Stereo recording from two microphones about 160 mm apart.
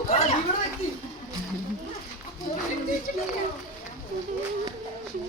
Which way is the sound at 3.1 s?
60° left (ahead or behind).